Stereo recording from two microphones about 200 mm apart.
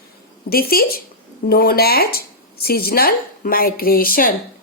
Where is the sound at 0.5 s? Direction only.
50° left (ahead or behind).